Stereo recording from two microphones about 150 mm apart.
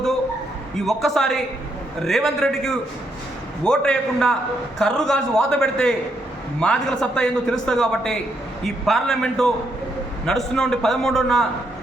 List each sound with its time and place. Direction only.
0.9 s a man's voice: centre (ahead or behind)